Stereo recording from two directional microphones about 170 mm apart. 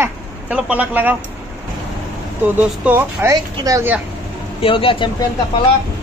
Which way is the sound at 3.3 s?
20° right (ahead or behind).